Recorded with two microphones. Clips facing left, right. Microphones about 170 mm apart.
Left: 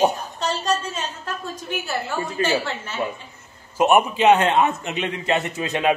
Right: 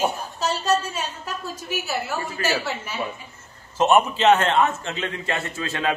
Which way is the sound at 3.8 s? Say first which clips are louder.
Left 1 dB; 10° left (ahead or behind).